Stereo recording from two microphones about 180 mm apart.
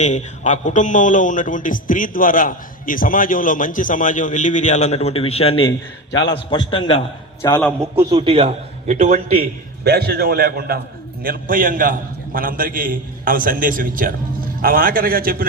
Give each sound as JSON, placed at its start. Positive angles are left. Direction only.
{"t": 0.0, "sound": "a man's voice", "side_deg": 40}
{"t": 8.1, "sound": "a man's voice", "side_deg": -30}
{"t": 9.8, "sound": "a man's voice", "side_deg": -65}